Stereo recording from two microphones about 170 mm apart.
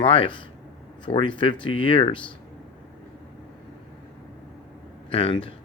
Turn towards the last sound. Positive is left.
turn(degrees=30)  # may be behind; listen again after turning